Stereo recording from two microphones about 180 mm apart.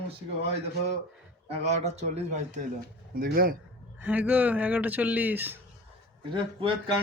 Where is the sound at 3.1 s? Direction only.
55° right (ahead or behind).